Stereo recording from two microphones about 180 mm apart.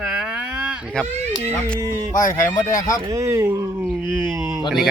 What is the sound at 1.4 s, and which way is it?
Speech, 15° right (ahead or behind).